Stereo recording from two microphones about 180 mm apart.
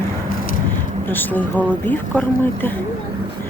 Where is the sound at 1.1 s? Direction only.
10° left (ahead or behind).